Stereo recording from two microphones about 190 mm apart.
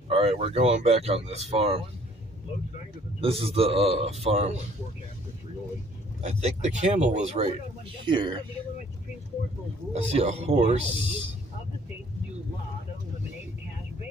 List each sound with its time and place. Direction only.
0.1 s speech: 30° right (ahead or behind)
3.2 s speech: 30° right (ahead or behind)
6.2 s speech: 35° right (ahead or behind)
8.0 s speech: 25° right (ahead or behind)
9.9 s speech: 35° right (ahead or behind)